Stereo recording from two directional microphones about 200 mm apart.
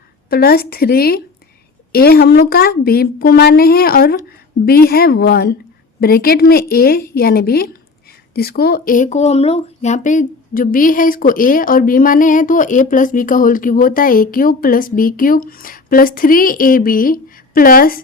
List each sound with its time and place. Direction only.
0.3 s a woman's voice: 50° left (ahead or behind)